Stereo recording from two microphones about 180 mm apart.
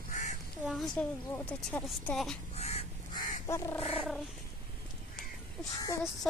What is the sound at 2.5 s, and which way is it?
Crow, 35° left (ahead or behind).